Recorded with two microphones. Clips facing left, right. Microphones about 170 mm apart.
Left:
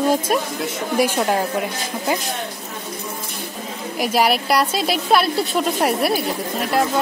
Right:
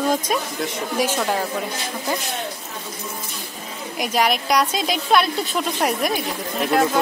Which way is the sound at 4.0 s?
5° left (ahead or behind).